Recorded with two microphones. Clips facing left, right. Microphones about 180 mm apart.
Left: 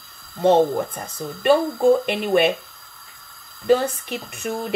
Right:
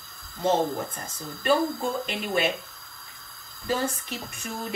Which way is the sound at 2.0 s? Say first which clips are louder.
Left 8 dB; 60° left (ahead or behind).